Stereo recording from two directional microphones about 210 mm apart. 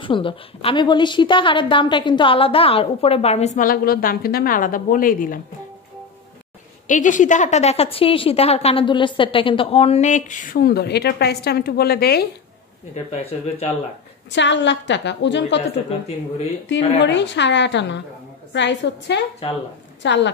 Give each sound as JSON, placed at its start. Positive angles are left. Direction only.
{"t": 0.0, "sound": "a woman's voice", "side_deg": 25}
{"t": 6.9, "sound": "a woman's voice", "side_deg": 35}
{"t": 12.9, "sound": "a woman's voice", "side_deg": 30}
{"t": 14.3, "sound": "a woman's voice", "side_deg": 55}
{"t": 17.0, "sound": "a woman's voice", "side_deg": 60}